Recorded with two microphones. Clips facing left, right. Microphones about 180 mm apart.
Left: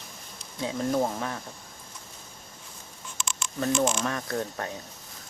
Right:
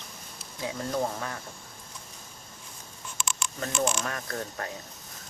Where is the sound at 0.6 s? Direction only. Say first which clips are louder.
Left 4 dB; 20° left (ahead or behind).